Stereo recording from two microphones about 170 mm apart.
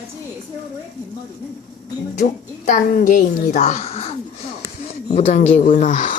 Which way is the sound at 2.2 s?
50° left (ahead or behind).